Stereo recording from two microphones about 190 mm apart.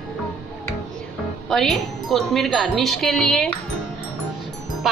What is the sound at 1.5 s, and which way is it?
Speech, centre (ahead or behind).